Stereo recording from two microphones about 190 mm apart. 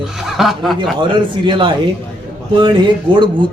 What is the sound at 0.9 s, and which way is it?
A man's voice, 25° right (ahead or behind).